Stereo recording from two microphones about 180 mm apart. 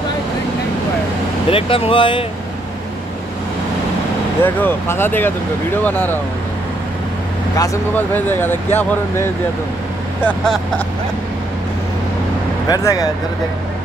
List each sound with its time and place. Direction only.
1.5 s speech: 30° left (ahead or behind)
4.4 s speech: 10° left (ahead or behind)
7.5 s speech: 15° left (ahead or behind)
12.6 s speech: 20° left (ahead or behind)